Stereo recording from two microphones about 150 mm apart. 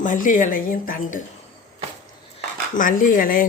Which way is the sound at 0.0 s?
60° left (ahead or behind).